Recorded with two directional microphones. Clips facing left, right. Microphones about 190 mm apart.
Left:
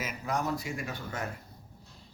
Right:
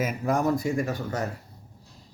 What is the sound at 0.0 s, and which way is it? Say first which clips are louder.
Speech: right 8 dB; 50° right (ahead or behind).